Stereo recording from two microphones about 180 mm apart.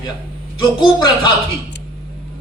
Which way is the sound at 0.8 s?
25° left (ahead or behind).